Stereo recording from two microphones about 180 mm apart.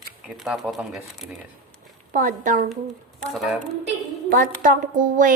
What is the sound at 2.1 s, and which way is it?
Speech, 45° right (ahead or behind).